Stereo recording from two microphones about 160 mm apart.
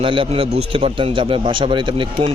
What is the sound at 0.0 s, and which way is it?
A man's voice, 35° right (ahead or behind).